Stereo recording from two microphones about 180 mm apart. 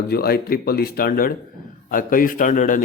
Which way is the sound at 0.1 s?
60° left (ahead or behind).